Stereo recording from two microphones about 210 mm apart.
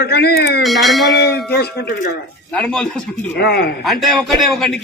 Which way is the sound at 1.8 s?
50° left (ahead or behind).